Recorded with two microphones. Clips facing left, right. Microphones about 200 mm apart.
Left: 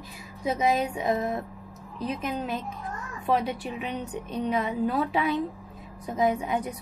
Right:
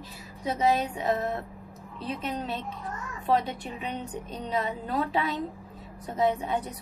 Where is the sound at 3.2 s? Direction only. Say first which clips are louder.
Left 1 dB; 10° left (ahead or behind).